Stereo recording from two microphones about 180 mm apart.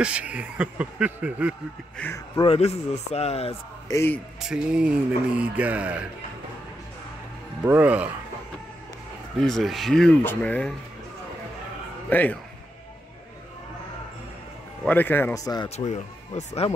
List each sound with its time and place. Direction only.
0.0 s speech: 5° right (ahead or behind)
2.0 s speech: 10° left (ahead or behind)
2.3 s a man's voice: 30° left (ahead or behind)
3.9 s speech: 15° left (ahead or behind)
4.5 s speech: 5° right (ahead or behind)
7.6 s speech: 10° right (ahead or behind)
9.4 s speech: centre (ahead or behind)
12.1 s speech: 10° left (ahead or behind)
14.9 s speech: 10° left (ahead or behind)
15.7 s a man's voice: 40° left (ahead or behind)